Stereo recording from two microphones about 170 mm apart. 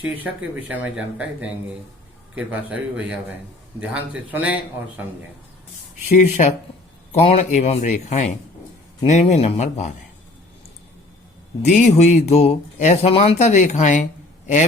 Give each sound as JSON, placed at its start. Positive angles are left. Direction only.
{"t": 0.7, "sound": "a man's voice", "side_deg": -10}
{"t": 6.1, "sound": "speech", "side_deg": 45}
{"t": 11.6, "sound": "speech", "side_deg": 45}